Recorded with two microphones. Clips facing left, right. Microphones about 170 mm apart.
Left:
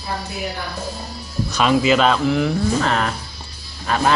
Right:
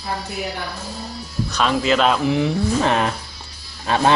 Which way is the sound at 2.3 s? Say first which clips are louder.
Even; 20° right (ahead or behind).